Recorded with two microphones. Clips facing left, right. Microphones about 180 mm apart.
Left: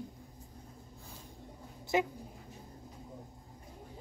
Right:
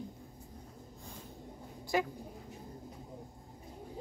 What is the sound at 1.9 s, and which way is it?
Speech, 20° left (ahead or behind).